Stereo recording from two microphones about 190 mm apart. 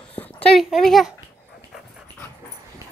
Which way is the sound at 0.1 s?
5° left (ahead or behind).